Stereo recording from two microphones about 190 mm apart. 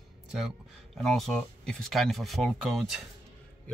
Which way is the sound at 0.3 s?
Centre (ahead or behind).